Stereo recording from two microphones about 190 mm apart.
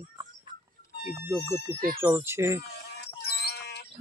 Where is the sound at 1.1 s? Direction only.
10° right (ahead or behind).